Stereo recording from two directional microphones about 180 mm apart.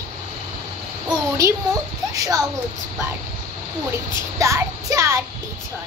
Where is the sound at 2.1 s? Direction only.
20° right (ahead or behind).